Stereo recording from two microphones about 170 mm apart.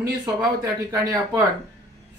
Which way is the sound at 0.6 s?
20° right (ahead or behind).